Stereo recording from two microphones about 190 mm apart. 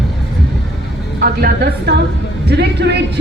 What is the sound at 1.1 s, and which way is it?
A woman's voice, 55° right (ahead or behind).